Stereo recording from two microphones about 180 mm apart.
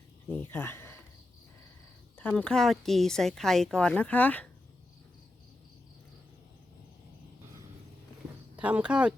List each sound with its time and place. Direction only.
0.3 s speech: 10° left (ahead or behind)
2.1 s speech: 5° left (ahead or behind)
8.5 s speech: 5° right (ahead or behind)